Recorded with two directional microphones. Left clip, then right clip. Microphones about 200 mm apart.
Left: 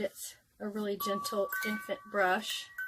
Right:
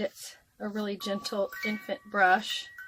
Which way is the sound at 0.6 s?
15° right (ahead or behind).